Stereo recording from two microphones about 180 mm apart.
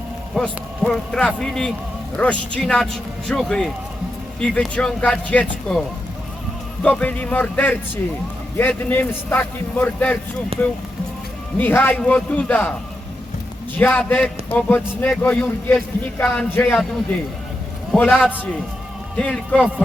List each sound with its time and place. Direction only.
0.3 s a man's voice: 5° left (ahead or behind)
6.8 s a man's voice: 10° left (ahead or behind)
10.5 s speech: 30° right (ahead or behind)
11.5 s a man's voice: 10° left (ahead or behind)
13.7 s a man's voice: 10° left (ahead or behind)
17.9 s a man's voice: centre (ahead or behind)
19.1 s a man's voice: 5° left (ahead or behind)